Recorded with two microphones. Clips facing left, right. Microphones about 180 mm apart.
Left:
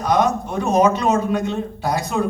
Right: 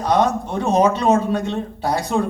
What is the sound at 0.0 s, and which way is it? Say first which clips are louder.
A man's voice: even; 30° right (ahead or behind).